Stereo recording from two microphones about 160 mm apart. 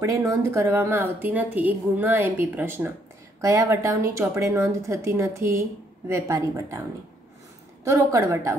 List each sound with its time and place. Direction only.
0.0 s speech: 20° right (ahead or behind)
7.8 s a woman's voice: 20° right (ahead or behind)